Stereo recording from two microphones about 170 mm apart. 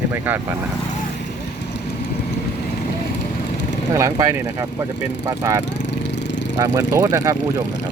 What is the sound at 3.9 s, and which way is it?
Speech, 20° right (ahead or behind).